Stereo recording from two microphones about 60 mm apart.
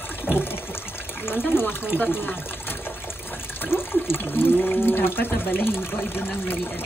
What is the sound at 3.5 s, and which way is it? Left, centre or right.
Speech, left.